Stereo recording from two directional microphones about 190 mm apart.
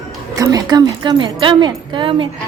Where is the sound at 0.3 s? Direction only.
20° right (ahead or behind).